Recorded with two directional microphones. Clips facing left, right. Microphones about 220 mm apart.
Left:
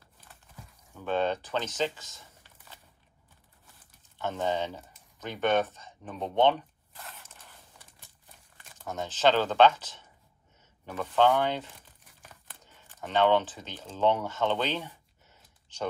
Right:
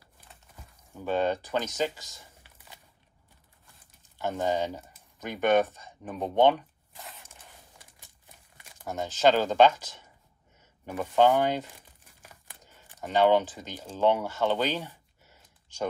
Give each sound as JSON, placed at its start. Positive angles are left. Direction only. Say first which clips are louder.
{"t": 0.9, "sound": "speech", "louder": "right 1 dB", "side_deg": -10}
{"t": 4.2, "sound": "speech", "louder": "right 2 dB", "side_deg": -10}
{"t": 7.0, "sound": "a sound", "louder": "right 1 dB", "side_deg": -15}
{"t": 8.5, "sound": "speech", "louder": "right 2 dB", "side_deg": -10}